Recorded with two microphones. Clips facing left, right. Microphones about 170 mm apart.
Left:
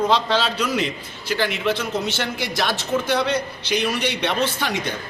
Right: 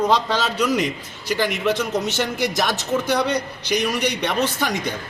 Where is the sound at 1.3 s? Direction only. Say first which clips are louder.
Right 1 dB; 15° right (ahead or behind).